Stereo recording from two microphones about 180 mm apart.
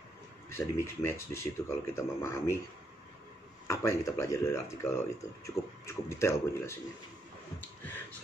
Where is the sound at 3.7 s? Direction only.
15° left (ahead or behind).